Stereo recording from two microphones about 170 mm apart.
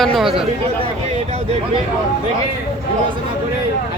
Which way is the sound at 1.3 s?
35° right (ahead or behind).